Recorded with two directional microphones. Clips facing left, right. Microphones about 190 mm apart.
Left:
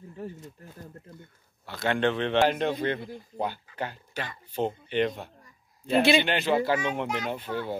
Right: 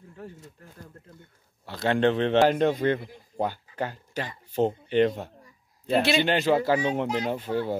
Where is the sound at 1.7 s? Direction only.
35° right (ahead or behind).